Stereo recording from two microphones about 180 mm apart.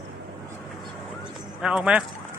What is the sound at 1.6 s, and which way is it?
Speech, 5° right (ahead or behind).